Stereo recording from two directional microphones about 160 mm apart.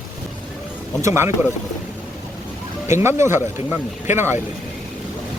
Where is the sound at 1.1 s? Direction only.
15° right (ahead or behind).